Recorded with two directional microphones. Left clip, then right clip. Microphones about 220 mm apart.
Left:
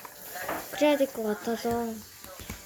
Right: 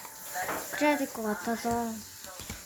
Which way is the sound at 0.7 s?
5° right (ahead or behind).